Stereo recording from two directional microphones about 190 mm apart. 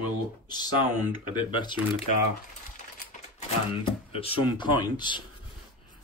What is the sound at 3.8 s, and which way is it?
Speech, 30° left (ahead or behind).